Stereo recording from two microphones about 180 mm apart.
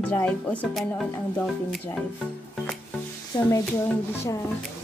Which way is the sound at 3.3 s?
25° left (ahead or behind).